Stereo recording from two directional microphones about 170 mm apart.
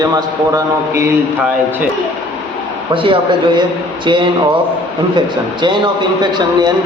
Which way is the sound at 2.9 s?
30° right (ahead or behind).